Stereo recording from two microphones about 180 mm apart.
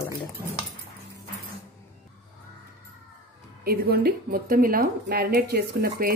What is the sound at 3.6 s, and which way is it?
Speech, 55° right (ahead or behind).